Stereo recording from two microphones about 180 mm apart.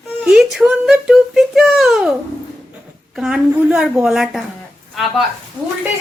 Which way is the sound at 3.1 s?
5° right (ahead or behind).